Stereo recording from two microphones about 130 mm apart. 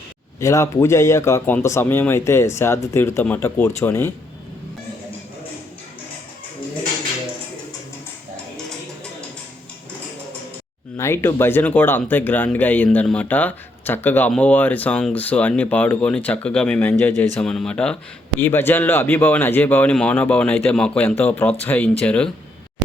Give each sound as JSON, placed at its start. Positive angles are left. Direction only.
{"t": 0.3, "sound": "speech", "side_deg": 25}
{"t": 10.9, "sound": "speech", "side_deg": 20}
{"t": 17.4, "sound": "speech", "side_deg": 5}